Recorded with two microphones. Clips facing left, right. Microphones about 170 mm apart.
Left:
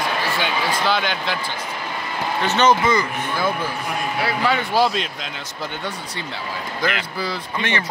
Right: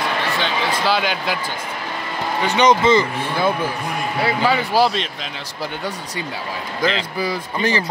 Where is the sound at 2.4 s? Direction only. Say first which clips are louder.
Right 2 dB; 15° right (ahead or behind).